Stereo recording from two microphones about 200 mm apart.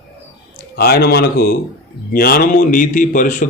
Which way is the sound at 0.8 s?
50° left (ahead or behind).